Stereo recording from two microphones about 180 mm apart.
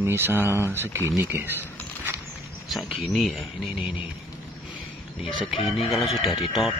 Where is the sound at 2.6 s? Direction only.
Centre (ahead or behind).